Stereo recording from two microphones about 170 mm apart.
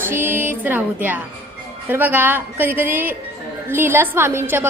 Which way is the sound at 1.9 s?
10° right (ahead or behind).